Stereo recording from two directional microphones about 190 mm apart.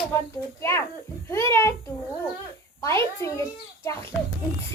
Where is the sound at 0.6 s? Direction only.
15° left (ahead or behind).